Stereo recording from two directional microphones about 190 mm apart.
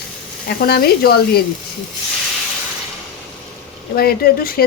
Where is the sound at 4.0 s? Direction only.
55° left (ahead or behind).